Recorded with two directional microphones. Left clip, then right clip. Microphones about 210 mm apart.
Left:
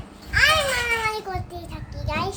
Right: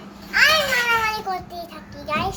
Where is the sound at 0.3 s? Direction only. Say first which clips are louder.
Right 2 dB; 15° left (ahead or behind).